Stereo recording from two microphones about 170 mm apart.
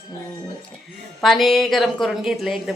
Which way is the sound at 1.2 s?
Centre (ahead or behind).